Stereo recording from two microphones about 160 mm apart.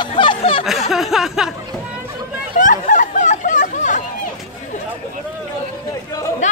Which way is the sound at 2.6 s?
55° left (ahead or behind).